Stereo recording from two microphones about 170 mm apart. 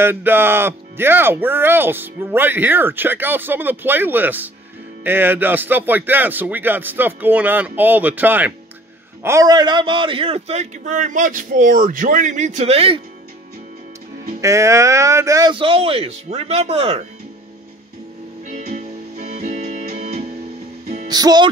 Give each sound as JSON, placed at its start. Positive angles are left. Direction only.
{"t": 0.0, "sound": "a man's voice", "side_deg": -15}
{"t": 14.4, "sound": "a man's voice", "side_deg": -20}
{"t": 18.5, "sound": "music", "side_deg": -45}
{"t": 21.1, "sound": "music", "side_deg": -25}